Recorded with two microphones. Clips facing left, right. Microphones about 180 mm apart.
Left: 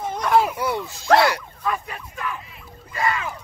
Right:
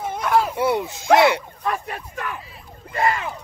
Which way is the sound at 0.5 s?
20° right (ahead or behind).